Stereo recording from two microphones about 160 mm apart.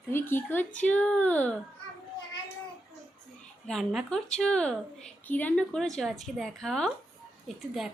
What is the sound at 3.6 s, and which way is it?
A woman's voice, centre (ahead or behind).